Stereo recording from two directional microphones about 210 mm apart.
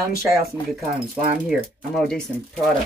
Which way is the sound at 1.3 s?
Centre (ahead or behind).